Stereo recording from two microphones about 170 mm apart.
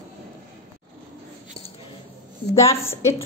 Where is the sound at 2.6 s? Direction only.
15° left (ahead or behind).